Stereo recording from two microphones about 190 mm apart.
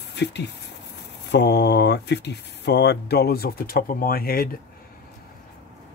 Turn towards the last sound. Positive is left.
turn(degrees=50)  # may be behind; listen again after turning